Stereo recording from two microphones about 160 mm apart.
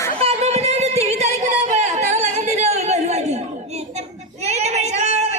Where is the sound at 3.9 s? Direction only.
45° right (ahead or behind).